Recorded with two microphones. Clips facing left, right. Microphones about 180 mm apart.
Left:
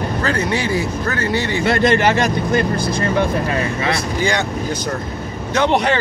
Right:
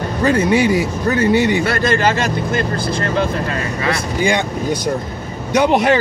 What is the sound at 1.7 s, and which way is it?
Speech, 25° left (ahead or behind).